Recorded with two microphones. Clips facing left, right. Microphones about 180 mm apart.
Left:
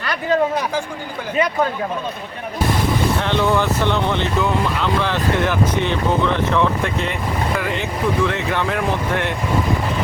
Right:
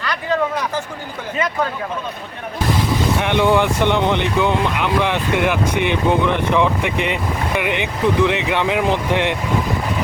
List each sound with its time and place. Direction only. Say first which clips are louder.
3.2 s speech: right 6 dB; 15° right (ahead or behind)